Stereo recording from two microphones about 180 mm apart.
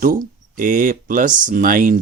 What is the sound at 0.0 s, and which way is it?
Speech, 50° right (ahead or behind).